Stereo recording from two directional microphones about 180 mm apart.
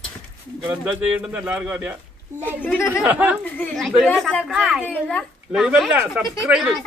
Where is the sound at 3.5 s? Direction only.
5° left (ahead or behind).